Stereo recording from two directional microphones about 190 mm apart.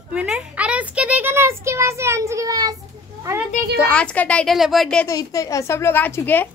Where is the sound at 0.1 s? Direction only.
5° right (ahead or behind).